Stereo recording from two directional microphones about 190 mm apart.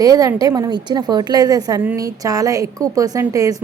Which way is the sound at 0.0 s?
20° right (ahead or behind).